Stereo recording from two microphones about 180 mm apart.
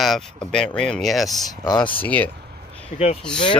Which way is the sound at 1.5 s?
20° left (ahead or behind).